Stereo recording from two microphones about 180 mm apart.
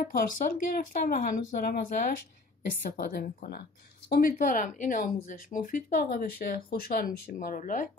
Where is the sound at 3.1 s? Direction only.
55° left (ahead or behind).